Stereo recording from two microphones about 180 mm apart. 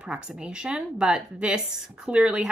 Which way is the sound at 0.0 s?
5° right (ahead or behind).